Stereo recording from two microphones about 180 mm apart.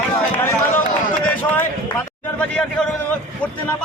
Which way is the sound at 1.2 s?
10° left (ahead or behind).